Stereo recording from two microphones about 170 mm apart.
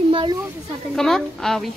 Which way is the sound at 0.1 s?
30° right (ahead or behind).